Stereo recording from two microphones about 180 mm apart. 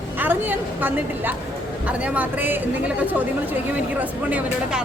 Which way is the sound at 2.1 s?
10° right (ahead or behind).